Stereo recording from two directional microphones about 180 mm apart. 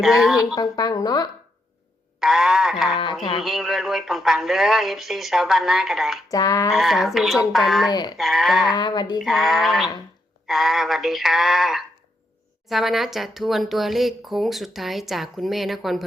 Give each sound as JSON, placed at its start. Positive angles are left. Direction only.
{"t": 0.0, "sound": "speech", "side_deg": 0}
{"t": 0.5, "sound": "a woman's voice", "side_deg": 20}
{"t": 2.2, "sound": "speech", "side_deg": 0}
{"t": 6.3, "sound": "a woman's voice", "side_deg": 20}
{"t": 6.7, "sound": "speech", "side_deg": 0}
{"t": 7.9, "sound": "a woman's voice", "side_deg": 20}
{"t": 8.2, "sound": "speech", "side_deg": 0}
{"t": 8.7, "sound": "a woman's voice", "side_deg": 25}
{"t": 9.1, "sound": "speech", "side_deg": 0}